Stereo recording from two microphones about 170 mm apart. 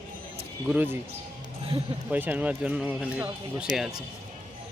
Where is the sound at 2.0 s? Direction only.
10° right (ahead or behind).